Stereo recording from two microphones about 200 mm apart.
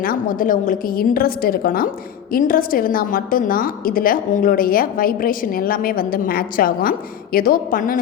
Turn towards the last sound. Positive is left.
turn(degrees=45)  # may be behind; listen again after turning